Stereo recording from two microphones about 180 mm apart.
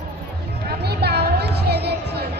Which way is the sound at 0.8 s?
65° right (ahead or behind).